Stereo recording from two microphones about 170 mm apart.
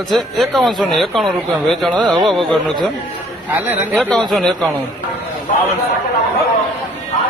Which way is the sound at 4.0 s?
5° left (ahead or behind).